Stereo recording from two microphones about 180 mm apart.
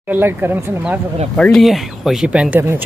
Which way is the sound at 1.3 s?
5° left (ahead or behind).